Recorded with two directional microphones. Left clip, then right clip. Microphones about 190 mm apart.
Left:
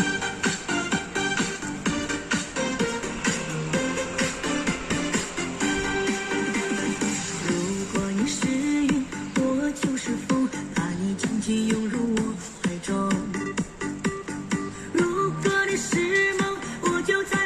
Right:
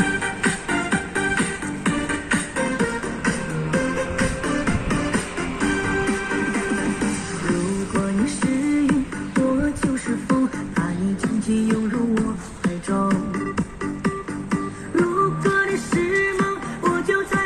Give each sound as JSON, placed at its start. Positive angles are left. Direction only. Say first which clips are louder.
{"t": 0.0, "sound": "music", "louder": "right 4 dB", "side_deg": 15}
{"t": 11.4, "sound": "music", "louder": "right 3 dB", "side_deg": 20}